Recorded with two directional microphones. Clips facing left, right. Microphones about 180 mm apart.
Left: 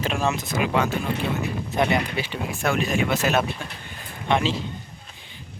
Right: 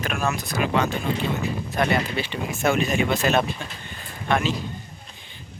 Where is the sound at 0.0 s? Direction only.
25° left (ahead or behind).